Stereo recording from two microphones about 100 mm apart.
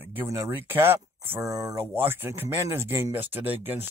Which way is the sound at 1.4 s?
35° right (ahead or behind).